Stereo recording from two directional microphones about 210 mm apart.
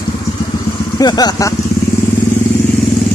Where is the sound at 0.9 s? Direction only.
20° left (ahead or behind).